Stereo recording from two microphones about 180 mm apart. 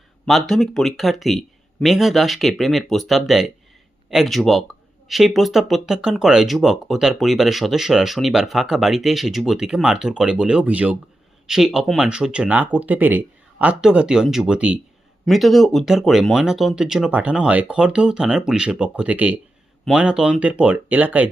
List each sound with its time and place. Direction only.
0.3 s speech: centre (ahead or behind)